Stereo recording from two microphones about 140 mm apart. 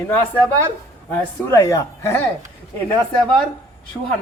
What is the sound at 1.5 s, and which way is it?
Speech, 20° left (ahead or behind).